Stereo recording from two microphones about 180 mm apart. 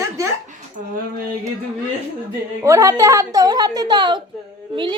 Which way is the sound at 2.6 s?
15° right (ahead or behind).